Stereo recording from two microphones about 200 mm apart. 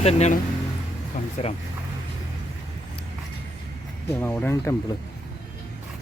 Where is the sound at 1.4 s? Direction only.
35° left (ahead or behind).